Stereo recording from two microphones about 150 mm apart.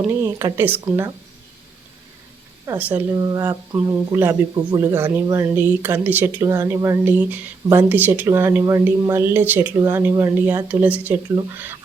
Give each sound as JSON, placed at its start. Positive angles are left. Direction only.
{"t": 0.1, "sound": "speech", "side_deg": -20}
{"t": 2.7, "sound": "speech", "side_deg": -10}
{"t": 3.2, "sound": "speech", "side_deg": -25}